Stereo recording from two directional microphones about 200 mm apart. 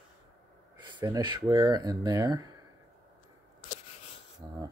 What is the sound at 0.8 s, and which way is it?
Speech, 20° right (ahead or behind).